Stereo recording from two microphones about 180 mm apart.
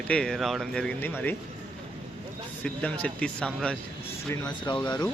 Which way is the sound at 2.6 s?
5° left (ahead or behind).